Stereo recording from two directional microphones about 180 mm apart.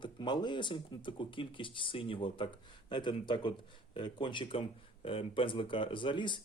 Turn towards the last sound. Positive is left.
turn(degrees=25)  # may be behind; listen again after turning